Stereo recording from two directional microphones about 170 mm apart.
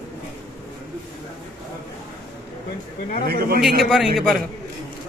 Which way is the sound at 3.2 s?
65° right (ahead or behind).